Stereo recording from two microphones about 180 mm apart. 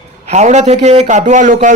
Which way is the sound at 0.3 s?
40° right (ahead or behind).